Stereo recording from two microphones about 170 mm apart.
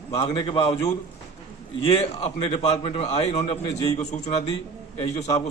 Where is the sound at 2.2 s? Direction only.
35° left (ahead or behind).